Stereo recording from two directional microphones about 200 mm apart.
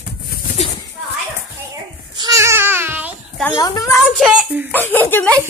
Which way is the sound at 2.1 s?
20° right (ahead or behind).